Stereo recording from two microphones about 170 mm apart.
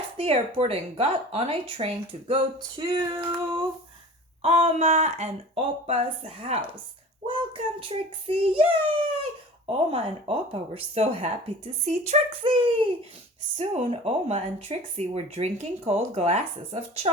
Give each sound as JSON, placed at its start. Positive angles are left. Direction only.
{"t": 0.2, "sound": "speech", "side_deg": -35}
{"t": 4.4, "sound": "speech", "side_deg": -40}
{"t": 7.3, "sound": "child singing", "side_deg": -30}
{"t": 9.6, "sound": "speech", "side_deg": -35}